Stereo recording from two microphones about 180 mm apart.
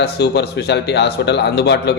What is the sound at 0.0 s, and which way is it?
A man's voice, 65° left (ahead or behind).